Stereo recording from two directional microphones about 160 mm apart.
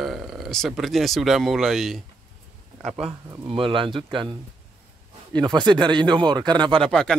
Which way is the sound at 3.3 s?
30° right (ahead or behind).